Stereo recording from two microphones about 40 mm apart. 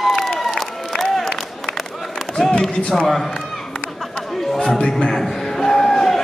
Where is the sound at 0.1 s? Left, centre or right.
Centre.